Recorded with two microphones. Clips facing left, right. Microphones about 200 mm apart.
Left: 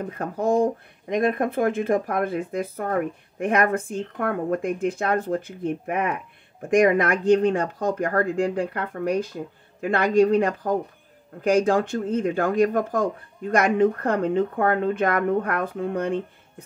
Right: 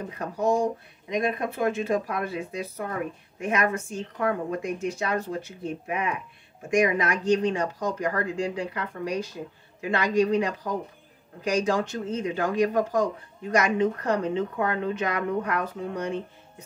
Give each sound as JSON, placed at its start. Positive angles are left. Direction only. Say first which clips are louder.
{"t": 0.2, "sound": "speech", "louder": "left 3 dB", "side_deg": 55}